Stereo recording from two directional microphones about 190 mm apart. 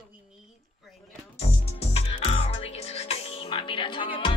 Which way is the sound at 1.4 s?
30° left (ahead or behind).